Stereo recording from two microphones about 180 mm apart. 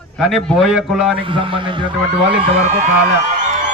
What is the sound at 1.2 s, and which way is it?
Speech, 30° right (ahead or behind).